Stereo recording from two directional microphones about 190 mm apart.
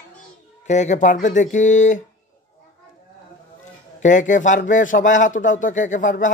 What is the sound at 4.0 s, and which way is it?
Speech, 40° left (ahead or behind).